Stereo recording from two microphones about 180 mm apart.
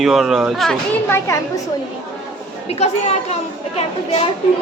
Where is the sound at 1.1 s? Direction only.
15° left (ahead or behind).